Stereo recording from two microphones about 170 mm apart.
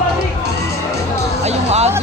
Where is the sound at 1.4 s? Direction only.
40° right (ahead or behind).